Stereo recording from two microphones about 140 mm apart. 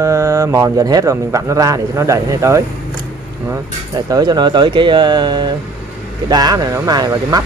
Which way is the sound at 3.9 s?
30° right (ahead or behind).